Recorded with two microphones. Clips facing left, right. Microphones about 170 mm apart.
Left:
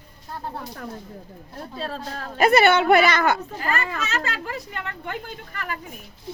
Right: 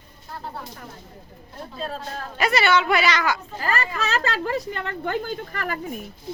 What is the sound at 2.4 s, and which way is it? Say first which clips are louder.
Speech: left 4 dB; 55° left (ahead or behind).